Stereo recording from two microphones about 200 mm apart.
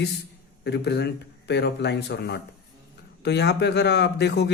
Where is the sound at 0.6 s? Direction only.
60° left (ahead or behind).